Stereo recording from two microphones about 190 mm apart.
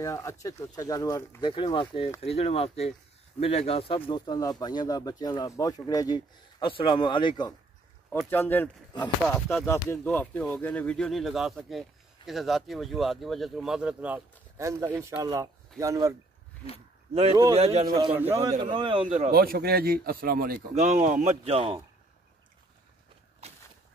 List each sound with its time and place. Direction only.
0.0 s speech: 15° left (ahead or behind)
8.3 s speech: 10° left (ahead or behind); by 16.2 s 15° right (ahead or behind)
17.1 s a man's voice: 30° right (ahead or behind)
18.1 s speech: 10° right (ahead or behind)
18.6 s a man's voice: 25° right (ahead or behind)
19.3 s speech: 50° right (ahead or behind)
20.7 s speech: 35° right (ahead or behind)
23.4 s a sound: 35° right (ahead or behind)